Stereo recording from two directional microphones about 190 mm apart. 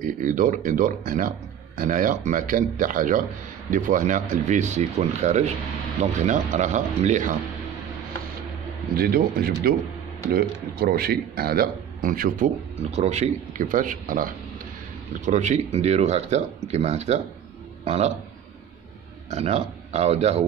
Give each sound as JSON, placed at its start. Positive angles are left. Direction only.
{"t": 0.0, "sound": "speech", "side_deg": -45}
{"t": 8.9, "sound": "speech", "side_deg": -55}
{"t": 12.9, "sound": "speech", "side_deg": -35}
{"t": 19.3, "sound": "speech", "side_deg": -35}